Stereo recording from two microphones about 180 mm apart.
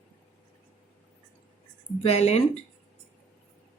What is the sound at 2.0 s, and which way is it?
Speech, 35° left (ahead or behind).